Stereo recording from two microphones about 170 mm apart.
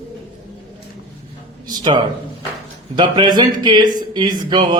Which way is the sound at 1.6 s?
30° right (ahead or behind).